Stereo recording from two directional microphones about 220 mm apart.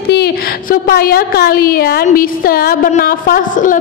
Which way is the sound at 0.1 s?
45° left (ahead or behind).